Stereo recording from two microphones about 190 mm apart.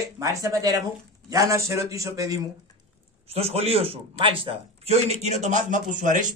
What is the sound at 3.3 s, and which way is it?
A man's voice, 30° right (ahead or behind).